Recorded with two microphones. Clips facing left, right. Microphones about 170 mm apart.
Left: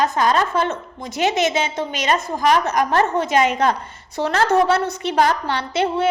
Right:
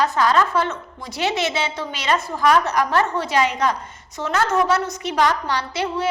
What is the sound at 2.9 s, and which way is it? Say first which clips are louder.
Speech: left 4 dB; 45° left (ahead or behind).